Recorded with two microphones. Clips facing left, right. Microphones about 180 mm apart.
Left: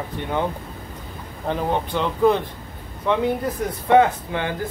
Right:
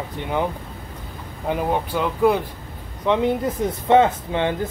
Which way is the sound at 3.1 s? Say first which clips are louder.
Right 1 dB; 20° right (ahead or behind).